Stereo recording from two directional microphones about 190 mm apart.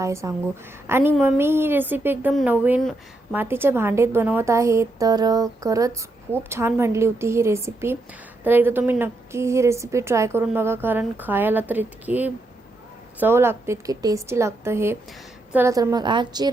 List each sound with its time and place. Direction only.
0.0 s a woman's voice: 15° right (ahead or behind)